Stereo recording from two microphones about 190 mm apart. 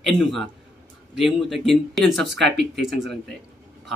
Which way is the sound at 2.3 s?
65° right (ahead or behind).